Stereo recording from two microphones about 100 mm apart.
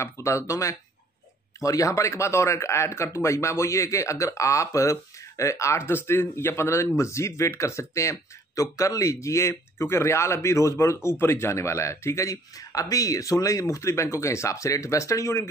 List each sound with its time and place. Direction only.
0.0 s speech: 30° left (ahead or behind)